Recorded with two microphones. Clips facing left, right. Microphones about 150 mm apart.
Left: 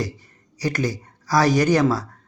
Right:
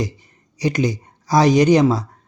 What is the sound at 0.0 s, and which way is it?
Speech, 20° right (ahead or behind).